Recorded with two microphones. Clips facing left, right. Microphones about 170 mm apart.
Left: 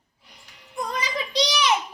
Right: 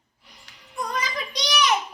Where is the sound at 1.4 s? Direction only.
25° left (ahead or behind).